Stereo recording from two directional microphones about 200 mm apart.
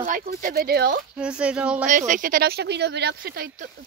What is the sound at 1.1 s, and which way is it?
Speech, 5° right (ahead or behind).